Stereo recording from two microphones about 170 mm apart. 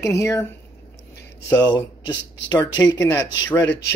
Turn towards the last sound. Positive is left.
turn(degrees=10)  # may be behind; listen again after turning